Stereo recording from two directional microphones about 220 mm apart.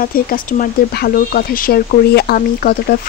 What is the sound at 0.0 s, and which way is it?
Speech, 40° left (ahead or behind).